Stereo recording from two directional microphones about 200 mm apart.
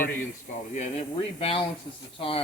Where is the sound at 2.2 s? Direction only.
25° left (ahead or behind).